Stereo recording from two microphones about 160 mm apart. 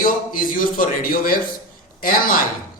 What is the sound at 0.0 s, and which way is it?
Speech, 60° left (ahead or behind).